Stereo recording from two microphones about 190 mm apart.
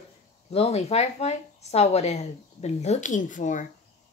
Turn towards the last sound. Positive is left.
turn(degrees=40)  # may be behind; listen again after turning